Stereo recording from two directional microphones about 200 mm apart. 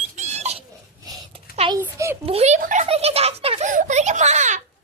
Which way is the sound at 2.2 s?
30° right (ahead or behind).